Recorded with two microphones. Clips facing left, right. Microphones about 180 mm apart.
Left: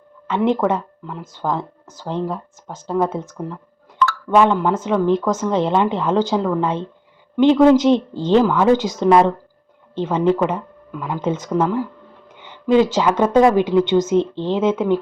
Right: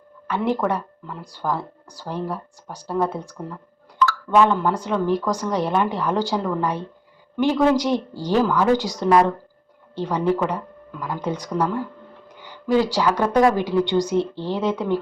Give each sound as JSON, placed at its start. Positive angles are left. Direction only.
{"t": 0.3, "sound": "speech", "side_deg": 20}